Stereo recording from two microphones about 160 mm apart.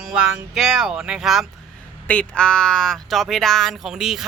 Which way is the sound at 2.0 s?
10° left (ahead or behind).